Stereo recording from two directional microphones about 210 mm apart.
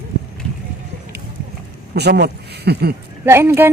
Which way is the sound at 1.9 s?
50° right (ahead or behind).